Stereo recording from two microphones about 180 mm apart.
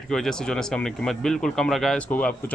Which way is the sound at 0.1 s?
5° left (ahead or behind).